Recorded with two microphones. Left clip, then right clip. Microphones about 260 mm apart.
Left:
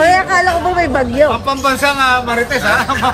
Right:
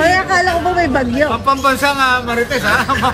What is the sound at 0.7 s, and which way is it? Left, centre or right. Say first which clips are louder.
Speech: left 2 dB; left.